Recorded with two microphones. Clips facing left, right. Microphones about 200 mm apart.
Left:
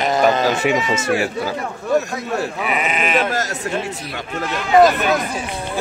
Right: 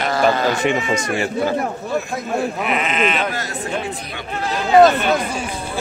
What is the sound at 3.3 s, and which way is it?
Speech, 40° left (ahead or behind).